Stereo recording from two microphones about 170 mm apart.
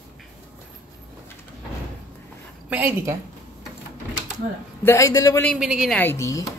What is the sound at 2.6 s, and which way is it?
Speech, 10° right (ahead or behind).